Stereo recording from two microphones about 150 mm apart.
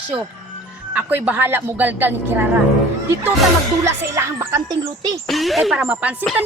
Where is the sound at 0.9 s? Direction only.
10° right (ahead or behind).